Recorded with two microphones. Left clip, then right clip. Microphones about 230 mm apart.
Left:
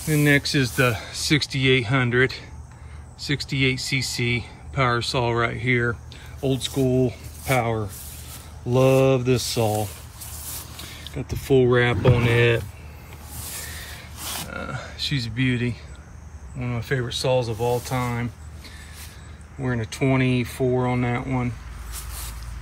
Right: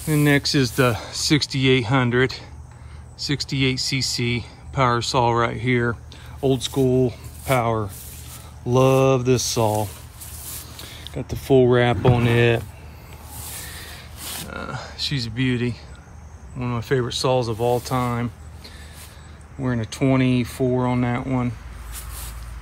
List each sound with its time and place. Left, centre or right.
0.0 s speech: centre
14.2 s speech: centre
19.6 s speech: centre